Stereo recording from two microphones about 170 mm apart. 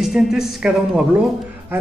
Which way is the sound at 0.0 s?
Centre (ahead or behind).